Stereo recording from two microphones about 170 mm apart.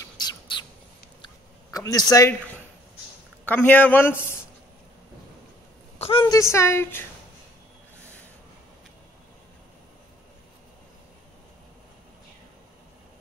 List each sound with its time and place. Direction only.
0.0 s bird: 25° left (ahead or behind)
1.2 s a sound: 20° left (ahead or behind)
3.4 s a woman's voice: 10° left (ahead or behind)
5.9 s a woman's voice: 35° left (ahead or behind); by 7.1 s 15° left (ahead or behind)